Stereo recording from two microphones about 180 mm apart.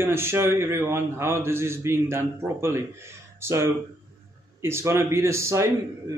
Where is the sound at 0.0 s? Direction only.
15° right (ahead or behind).